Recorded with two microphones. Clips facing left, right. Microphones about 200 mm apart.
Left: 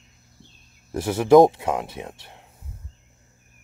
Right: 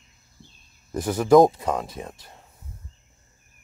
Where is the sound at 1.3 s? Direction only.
5° left (ahead or behind).